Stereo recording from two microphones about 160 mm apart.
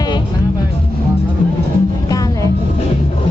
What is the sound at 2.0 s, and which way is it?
Music, 25° left (ahead or behind).